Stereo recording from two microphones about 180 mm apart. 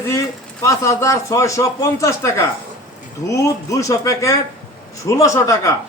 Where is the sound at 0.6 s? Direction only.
15° left (ahead or behind).